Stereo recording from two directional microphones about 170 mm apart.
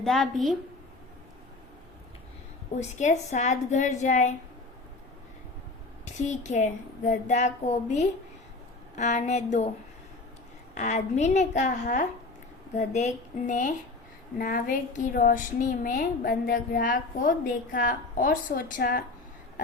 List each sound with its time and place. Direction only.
0.0 s a woman's voice: centre (ahead or behind)
3.0 s a woman's voice: 45° left (ahead or behind)
6.2 s a woman's voice: 45° left (ahead or behind)
10.8 s a woman's voice: 40° left (ahead or behind); by 19.0 s 60° left (ahead or behind)